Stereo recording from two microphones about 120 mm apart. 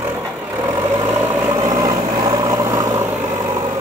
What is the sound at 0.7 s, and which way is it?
Vehicle, 25° right (ahead or behind).